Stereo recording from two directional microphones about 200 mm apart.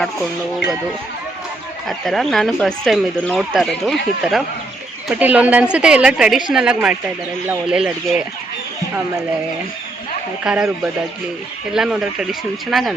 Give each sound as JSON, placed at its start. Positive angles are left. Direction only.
{"t": 1.9, "sound": "speech", "side_deg": 0}
{"t": 10.4, "sound": "speech", "side_deg": -5}
{"t": 11.7, "sound": "speech", "side_deg": -5}